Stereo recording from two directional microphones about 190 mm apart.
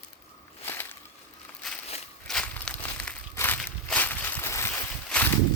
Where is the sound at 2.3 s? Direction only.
5° left (ahead or behind).